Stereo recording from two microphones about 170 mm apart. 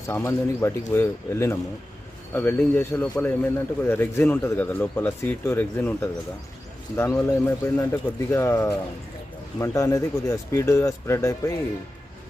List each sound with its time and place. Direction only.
0.1 s speech: 15° left (ahead or behind)